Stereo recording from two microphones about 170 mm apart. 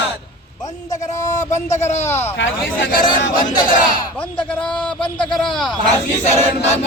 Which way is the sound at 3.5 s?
50° left (ahead or behind).